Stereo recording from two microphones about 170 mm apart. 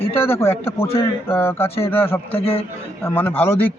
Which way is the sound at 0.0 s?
35° left (ahead or behind).